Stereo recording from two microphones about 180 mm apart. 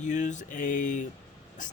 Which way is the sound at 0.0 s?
45° left (ahead or behind).